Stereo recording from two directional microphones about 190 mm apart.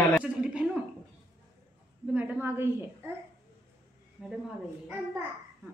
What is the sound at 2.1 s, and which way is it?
A woman's voice, 5° right (ahead or behind).